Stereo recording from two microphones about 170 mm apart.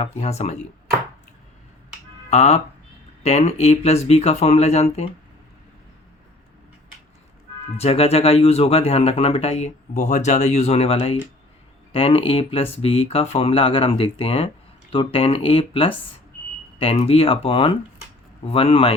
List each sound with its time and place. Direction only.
0.0 s speech: 40° left (ahead or behind)
2.3 s speech: 40° left (ahead or behind)
7.8 s speech: 35° left (ahead or behind)